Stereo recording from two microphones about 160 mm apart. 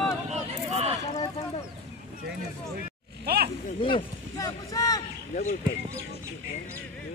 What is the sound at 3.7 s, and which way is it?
Speech, 35° left (ahead or behind).